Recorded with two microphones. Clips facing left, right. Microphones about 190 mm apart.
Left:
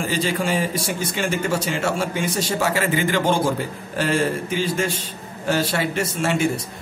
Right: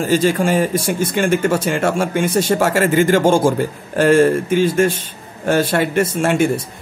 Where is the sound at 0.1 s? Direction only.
45° right (ahead or behind).